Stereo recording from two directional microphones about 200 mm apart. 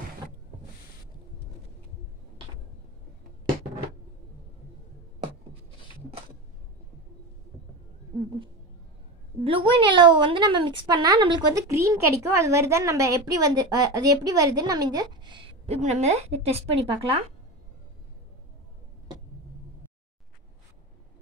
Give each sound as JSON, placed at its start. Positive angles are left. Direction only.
{"t": 9.4, "sound": "a woman's voice", "side_deg": -25}